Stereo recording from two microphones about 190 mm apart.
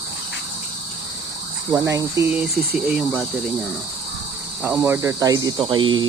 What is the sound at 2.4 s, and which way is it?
Speech, 5° right (ahead or behind).